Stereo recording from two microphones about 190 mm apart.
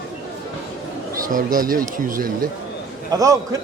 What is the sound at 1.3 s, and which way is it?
Speech, 45° right (ahead or behind).